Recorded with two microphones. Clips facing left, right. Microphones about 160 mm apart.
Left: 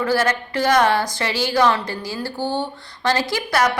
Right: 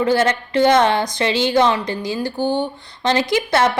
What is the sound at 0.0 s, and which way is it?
A woman's voice, 20° right (ahead or behind).